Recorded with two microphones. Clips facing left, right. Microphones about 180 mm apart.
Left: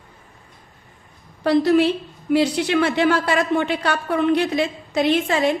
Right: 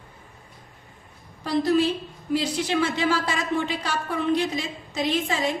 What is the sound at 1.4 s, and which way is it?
A woman's voice, 70° left (ahead or behind).